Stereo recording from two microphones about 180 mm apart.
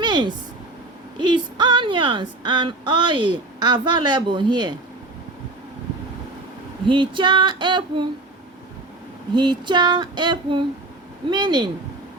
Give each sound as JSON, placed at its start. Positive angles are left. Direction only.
{"t": 0.0, "sound": "a sound", "side_deg": -25}
{"t": 1.3, "sound": "speech", "side_deg": -25}
{"t": 6.8, "sound": "female singing", "side_deg": -25}
{"t": 9.3, "sound": "female singing", "side_deg": -25}